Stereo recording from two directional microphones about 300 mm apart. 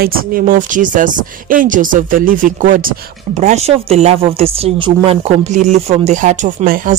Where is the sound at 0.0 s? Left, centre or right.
Right.